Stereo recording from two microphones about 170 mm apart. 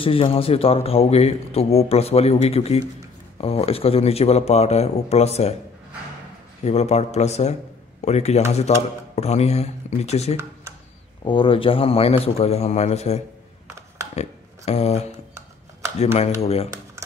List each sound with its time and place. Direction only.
0.0 s speech: 35° left (ahead or behind)
6.6 s speech: 40° left (ahead or behind)
14.1 s a sound: 40° left (ahead or behind)
16.3 s speech: 35° left (ahead or behind)